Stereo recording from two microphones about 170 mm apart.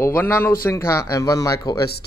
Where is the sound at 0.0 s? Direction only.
15° left (ahead or behind).